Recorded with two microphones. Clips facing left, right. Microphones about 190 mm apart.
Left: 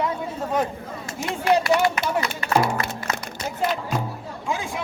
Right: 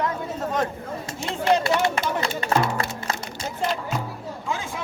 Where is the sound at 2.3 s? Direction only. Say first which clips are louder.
Even; 25° right (ahead or behind).